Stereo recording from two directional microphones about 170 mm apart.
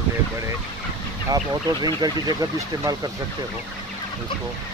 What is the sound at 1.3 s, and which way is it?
Speech, 25° right (ahead or behind).